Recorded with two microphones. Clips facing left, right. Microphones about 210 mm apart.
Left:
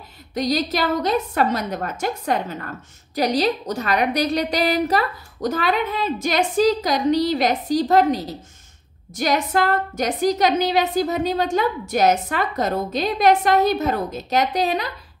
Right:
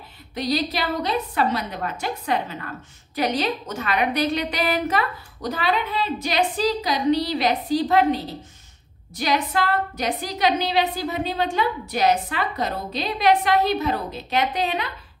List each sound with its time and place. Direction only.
0.3 s a woman's voice: 45° left (ahead or behind)